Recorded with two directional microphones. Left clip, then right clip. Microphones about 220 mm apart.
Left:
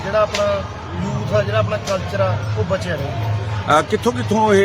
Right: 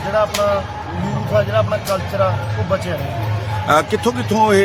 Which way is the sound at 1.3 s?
Centre (ahead or behind).